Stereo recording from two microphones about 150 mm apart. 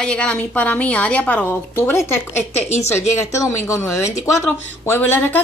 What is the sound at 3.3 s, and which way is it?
Speech, 20° left (ahead or behind).